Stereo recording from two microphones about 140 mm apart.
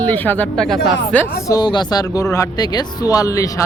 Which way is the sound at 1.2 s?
25° left (ahead or behind).